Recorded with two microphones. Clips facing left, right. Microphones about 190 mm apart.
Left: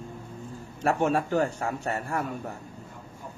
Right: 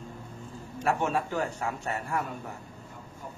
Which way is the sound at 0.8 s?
50° left (ahead or behind).